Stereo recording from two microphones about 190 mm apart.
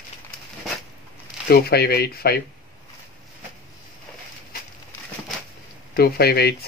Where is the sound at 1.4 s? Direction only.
55° left (ahead or behind).